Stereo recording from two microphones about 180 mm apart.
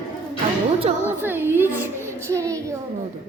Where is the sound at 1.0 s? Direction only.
10° right (ahead or behind).